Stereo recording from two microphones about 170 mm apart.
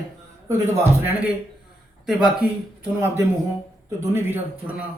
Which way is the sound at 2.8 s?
10° right (ahead or behind).